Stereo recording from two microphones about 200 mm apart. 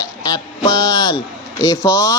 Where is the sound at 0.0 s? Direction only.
20° left (ahead or behind).